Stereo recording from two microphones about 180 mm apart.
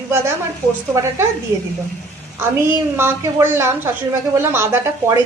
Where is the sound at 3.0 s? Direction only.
15° right (ahead or behind).